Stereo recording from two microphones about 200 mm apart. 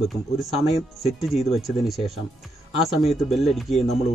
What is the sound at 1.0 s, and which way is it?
Speech, centre (ahead or behind).